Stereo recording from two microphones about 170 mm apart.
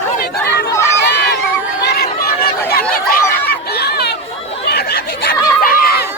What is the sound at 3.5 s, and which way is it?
Chatter, 70° left (ahead or behind).